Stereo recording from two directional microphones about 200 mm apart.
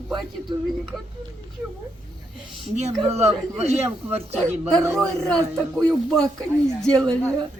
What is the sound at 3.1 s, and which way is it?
Speech, 30° right (ahead or behind).